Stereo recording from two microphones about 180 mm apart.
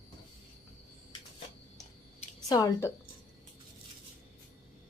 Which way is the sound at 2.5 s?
15° left (ahead or behind).